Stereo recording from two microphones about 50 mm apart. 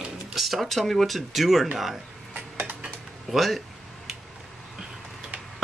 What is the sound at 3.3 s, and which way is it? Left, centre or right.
Speech, centre.